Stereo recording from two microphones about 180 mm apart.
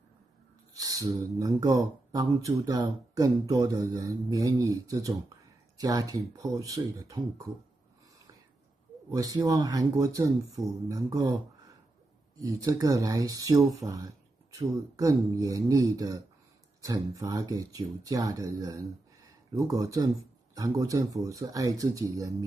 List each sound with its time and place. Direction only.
0.7 s speech: 20° right (ahead or behind)
9.1 s speech: 20° right (ahead or behind)
12.4 s speech: 20° right (ahead or behind)